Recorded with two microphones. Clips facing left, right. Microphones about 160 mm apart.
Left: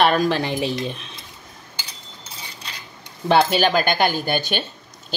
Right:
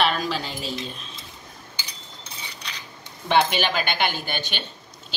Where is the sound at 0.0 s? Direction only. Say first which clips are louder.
Left 6 dB; 50° left (ahead or behind).